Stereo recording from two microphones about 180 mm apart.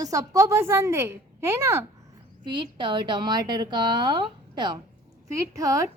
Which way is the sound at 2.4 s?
25° right (ahead or behind).